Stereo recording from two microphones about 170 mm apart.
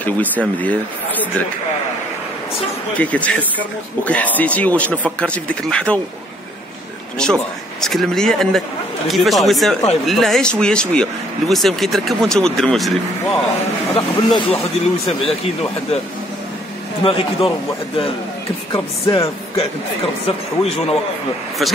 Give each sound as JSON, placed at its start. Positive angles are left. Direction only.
{"t": 0.0, "sound": "speech", "side_deg": 10}
{"t": 3.0, "sound": "speech", "side_deg": 10}
{"t": 7.2, "sound": "speech", "side_deg": 5}
{"t": 13.9, "sound": "speech", "side_deg": 35}
{"t": 17.0, "sound": "speech", "side_deg": 30}
{"t": 18.7, "sound": "speech", "side_deg": 30}
{"t": 20.2, "sound": "speech", "side_deg": 40}